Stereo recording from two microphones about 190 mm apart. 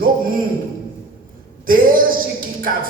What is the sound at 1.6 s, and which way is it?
Speech, 50° right (ahead or behind).